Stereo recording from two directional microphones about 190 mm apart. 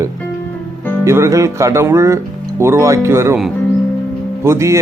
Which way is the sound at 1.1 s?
15° right (ahead or behind).